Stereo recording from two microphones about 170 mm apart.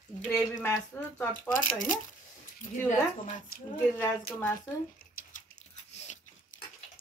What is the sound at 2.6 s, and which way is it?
Speech, 50° left (ahead or behind).